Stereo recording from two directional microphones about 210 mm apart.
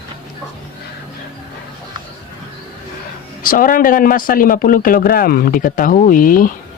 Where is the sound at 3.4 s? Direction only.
40° left (ahead or behind).